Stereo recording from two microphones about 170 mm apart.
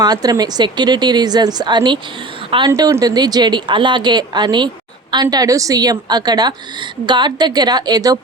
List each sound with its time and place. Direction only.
0.0 s a woman's voice: 25° right (ahead or behind)